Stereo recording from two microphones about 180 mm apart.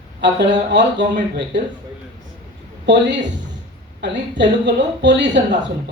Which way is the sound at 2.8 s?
75° right (ahead or behind).